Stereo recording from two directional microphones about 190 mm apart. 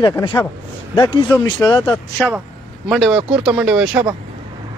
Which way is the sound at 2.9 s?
5° right (ahead or behind).